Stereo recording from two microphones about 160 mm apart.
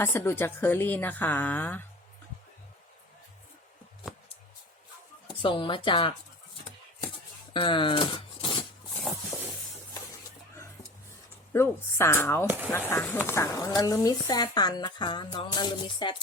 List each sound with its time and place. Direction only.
0.0 s a woman's voice: 15° left (ahead or behind)
5.4 s speech: 30° left (ahead or behind)
7.5 s speech: 30° left (ahead or behind)
9.3 s stir: 15° left (ahead or behind)
11.5 s a woman's voice: 15° left (ahead or behind)
12.5 s speech: 10° right (ahead or behind)
12.7 s speech: 15° left (ahead or behind)